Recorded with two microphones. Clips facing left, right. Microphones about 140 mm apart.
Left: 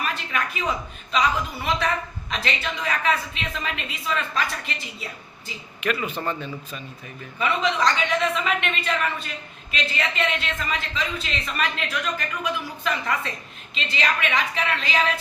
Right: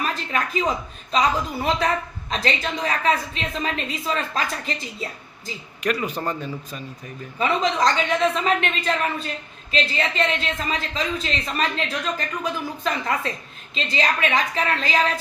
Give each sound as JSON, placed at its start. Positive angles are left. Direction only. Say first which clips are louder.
{"t": 0.1, "sound": "a sound", "louder": "right 3 dB", "side_deg": -35}
{"t": 1.1, "sound": "speech", "louder": "right 2 dB", "side_deg": -35}
{"t": 7.3, "sound": "speech", "louder": "right 2 dB", "side_deg": -35}